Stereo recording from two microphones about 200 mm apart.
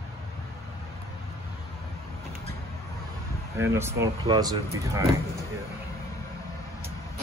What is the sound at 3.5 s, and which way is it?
A man's voice, 10° right (ahead or behind).